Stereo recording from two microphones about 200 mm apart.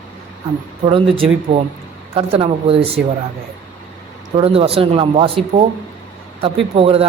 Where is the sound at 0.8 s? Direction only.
25° right (ahead or behind).